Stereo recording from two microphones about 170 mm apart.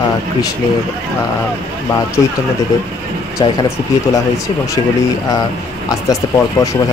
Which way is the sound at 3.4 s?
25° left (ahead or behind).